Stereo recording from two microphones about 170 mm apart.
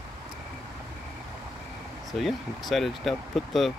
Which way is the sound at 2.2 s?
Centre (ahead or behind).